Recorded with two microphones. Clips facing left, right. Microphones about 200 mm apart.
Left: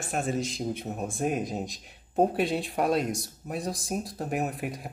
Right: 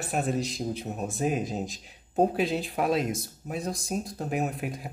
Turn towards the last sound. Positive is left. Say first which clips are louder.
# right 1 dB
turn(degrees=0)  # may be behind; listen again after turning